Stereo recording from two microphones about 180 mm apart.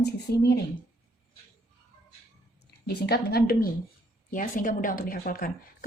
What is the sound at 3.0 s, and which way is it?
A woman's voice, 60° left (ahead or behind).